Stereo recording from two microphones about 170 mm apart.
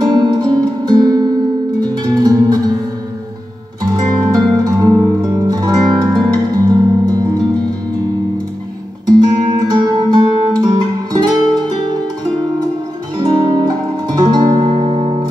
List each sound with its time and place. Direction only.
0.0 s music: 25° right (ahead or behind)
3.8 s music: 20° right (ahead or behind)
9.0 s music: 20° right (ahead or behind)
13.2 s music: 20° right (ahead or behind)